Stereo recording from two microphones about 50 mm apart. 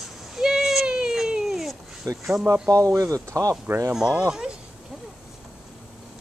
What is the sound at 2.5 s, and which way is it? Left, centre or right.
Speech, right.